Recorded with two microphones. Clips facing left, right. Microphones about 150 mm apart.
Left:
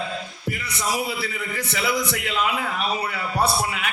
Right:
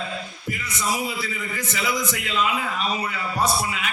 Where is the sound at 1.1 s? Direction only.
65° left (ahead or behind).